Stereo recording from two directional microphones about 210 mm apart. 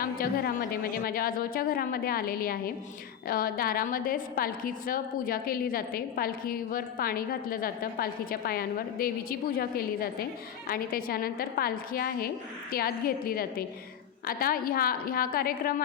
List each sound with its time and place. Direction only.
0.0 s a woman's voice: 45° left (ahead or behind)